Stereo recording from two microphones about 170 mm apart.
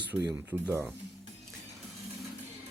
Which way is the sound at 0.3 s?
15° right (ahead or behind).